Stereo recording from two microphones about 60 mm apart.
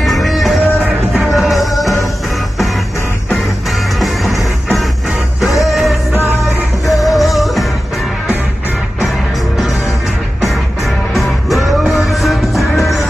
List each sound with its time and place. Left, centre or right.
0.0 s music: centre
5.4 s music: centre
7.0 s music: centre
11.1 s music: centre